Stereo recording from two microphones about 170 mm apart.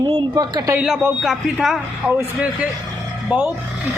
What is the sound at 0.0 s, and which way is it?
Speech, 20° right (ahead or behind).